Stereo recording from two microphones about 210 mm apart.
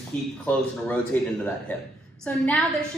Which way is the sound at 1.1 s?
10° left (ahead or behind).